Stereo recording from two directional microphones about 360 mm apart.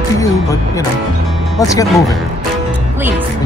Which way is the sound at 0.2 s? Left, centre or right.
Centre.